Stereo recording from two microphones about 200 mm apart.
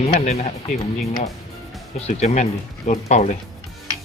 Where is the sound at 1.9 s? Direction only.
35° left (ahead or behind).